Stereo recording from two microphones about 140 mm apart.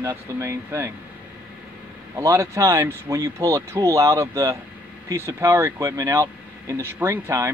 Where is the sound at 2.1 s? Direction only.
20° right (ahead or behind).